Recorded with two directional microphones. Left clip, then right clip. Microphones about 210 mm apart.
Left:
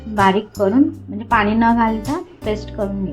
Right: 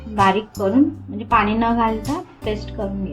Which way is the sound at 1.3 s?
25° left (ahead or behind).